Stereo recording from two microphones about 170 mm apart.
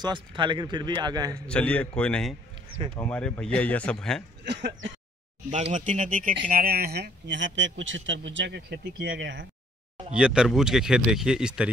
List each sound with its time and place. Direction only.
0.0 s speech: 25° right (ahead or behind)
1.3 s speech: 5° left (ahead or behind)
4.5 s a man's voice: 90° right
5.5 s a man's voice: 45° right (ahead or behind); by 9.5 s 90° right
10.1 s speech: 5° right (ahead or behind)